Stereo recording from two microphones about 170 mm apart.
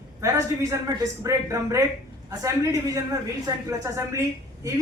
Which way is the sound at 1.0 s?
20° right (ahead or behind).